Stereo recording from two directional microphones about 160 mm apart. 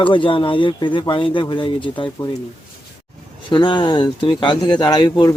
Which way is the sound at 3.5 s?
30° left (ahead or behind).